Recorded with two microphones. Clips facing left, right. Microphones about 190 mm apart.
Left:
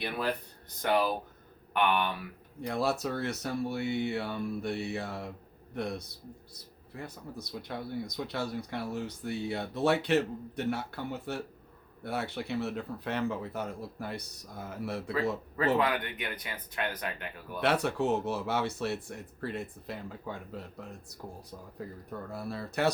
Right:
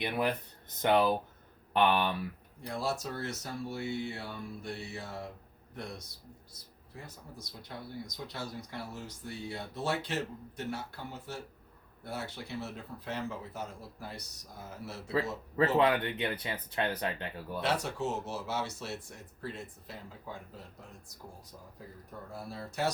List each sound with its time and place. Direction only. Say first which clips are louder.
0.0 s speech: right 1 dB; 20° right (ahead or behind)
2.6 s a man's voice: left 5 dB; 65° left (ahead or behind)
15.5 s speech: right 3 dB; 30° right (ahead or behind)
17.6 s speech: left 5 dB; 60° left (ahead or behind)
22.3 s speech: left 3 dB; 65° left (ahead or behind)